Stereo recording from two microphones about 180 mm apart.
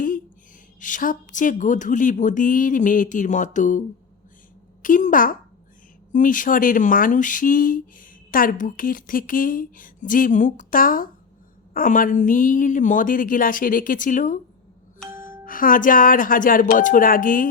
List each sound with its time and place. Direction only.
0.8 s speech: 45° left (ahead or behind)